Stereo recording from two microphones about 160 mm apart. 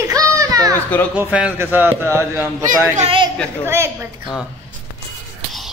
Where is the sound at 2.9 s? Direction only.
35° right (ahead or behind).